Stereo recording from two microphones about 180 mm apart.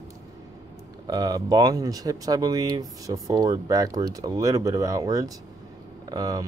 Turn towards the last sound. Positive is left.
turn(degrees=-20)  # may be behind; listen again after turning